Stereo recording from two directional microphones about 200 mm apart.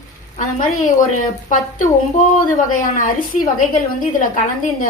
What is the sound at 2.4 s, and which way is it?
A woman's voice, 40° left (ahead or behind).